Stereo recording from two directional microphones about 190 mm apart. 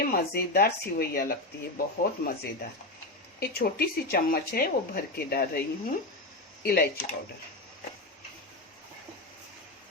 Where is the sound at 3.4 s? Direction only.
55° left (ahead or behind).